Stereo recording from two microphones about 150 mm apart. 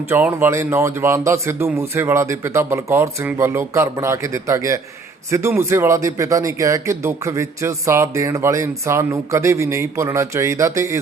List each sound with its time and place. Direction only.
0.1 s a man's voice: 15° right (ahead or behind)